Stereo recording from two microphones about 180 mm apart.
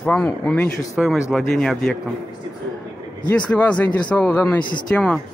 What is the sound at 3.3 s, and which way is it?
Speech, 10° left (ahead or behind).